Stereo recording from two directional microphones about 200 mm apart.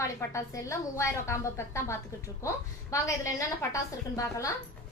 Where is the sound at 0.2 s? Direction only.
15° left (ahead or behind).